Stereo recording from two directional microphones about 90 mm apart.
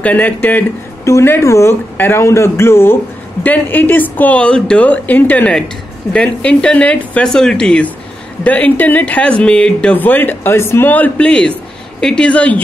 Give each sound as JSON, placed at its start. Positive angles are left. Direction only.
{"t": 0.0, "sound": "speech", "side_deg": 20}
{"t": 1.0, "sound": "speech", "side_deg": 30}